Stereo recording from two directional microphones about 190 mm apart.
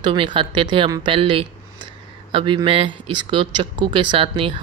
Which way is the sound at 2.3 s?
25° right (ahead or behind).